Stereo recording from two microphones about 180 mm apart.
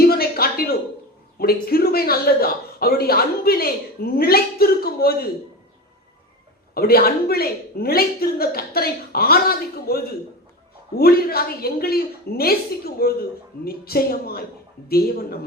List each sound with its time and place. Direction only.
0.0 s a sound: 60° left (ahead or behind)
1.4 s a woman's voice: 55° left (ahead or behind)
6.7 s a woman's voice: 60° left (ahead or behind)